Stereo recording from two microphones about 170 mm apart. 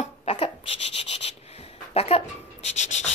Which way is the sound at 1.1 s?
35° left (ahead or behind).